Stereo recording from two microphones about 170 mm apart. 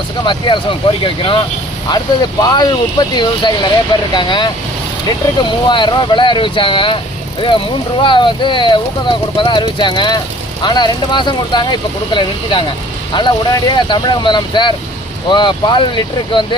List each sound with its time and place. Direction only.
0.2 s speech: 30° left (ahead or behind)
2.4 s speech: 25° left (ahead or behind)